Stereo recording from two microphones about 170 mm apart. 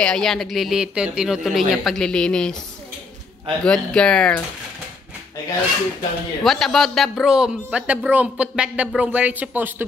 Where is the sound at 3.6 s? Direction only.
5° left (ahead or behind).